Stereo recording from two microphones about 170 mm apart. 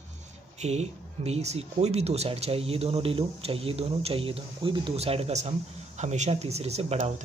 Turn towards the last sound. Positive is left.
turn(degrees=-40)  # may be behind; listen again after turning